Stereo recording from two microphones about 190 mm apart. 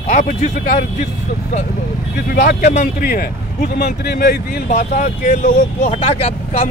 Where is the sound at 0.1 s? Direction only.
45° left (ahead or behind).